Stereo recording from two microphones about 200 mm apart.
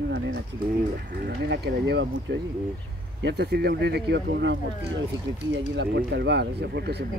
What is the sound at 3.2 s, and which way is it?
Speech, 60° right (ahead or behind).